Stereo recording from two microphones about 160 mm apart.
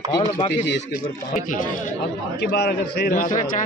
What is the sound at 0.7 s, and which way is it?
A man's voice, 80° left.